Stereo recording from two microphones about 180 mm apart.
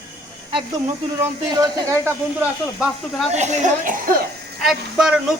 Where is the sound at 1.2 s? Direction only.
20° right (ahead or behind).